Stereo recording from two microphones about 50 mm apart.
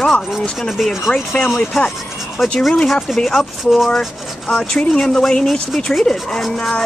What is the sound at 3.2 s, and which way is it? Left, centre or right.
Rub, centre.